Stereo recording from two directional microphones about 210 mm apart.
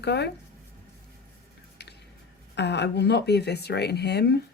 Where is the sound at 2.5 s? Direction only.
55° left (ahead or behind).